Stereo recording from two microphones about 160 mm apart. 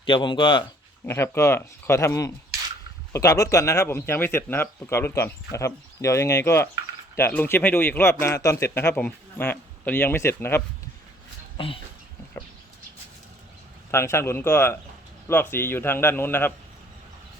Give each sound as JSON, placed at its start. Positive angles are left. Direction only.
{"t": 0.0, "sound": "speech", "side_deg": 30}
{"t": 1.0, "sound": "speech", "side_deg": 15}
{"t": 11.5, "sound": "speech", "side_deg": 35}
{"t": 13.9, "sound": "speech", "side_deg": 15}